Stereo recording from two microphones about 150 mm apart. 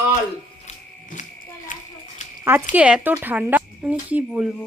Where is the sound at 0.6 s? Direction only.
55° left (ahead or behind).